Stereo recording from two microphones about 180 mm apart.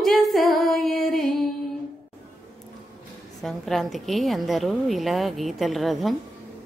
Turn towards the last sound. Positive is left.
turn(degrees=0)  # may be behind; listen again after turning